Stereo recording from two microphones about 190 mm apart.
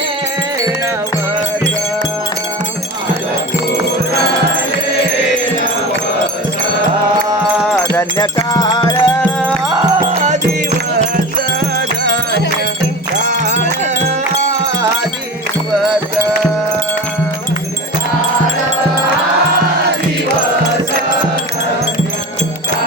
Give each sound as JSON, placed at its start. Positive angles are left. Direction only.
{"t": 7.9, "sound": "music", "side_deg": 15}
{"t": 11.6, "sound": "music", "side_deg": -65}